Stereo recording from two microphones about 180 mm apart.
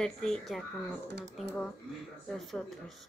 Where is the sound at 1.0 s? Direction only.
70° right (ahead or behind).